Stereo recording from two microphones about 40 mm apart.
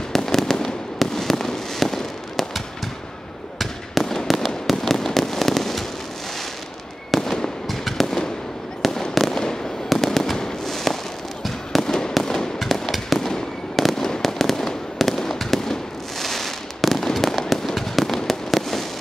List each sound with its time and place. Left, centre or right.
0.1 s fireworks: centre
3.5 s fireworks: centre
7.1 s fireworks: centre
9.3 s fireworks: centre